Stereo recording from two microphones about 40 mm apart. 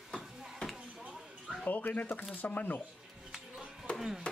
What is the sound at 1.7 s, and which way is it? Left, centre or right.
Speech, left.